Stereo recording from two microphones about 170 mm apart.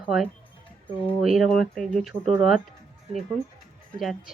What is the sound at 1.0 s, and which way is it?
Speech, centre (ahead or behind).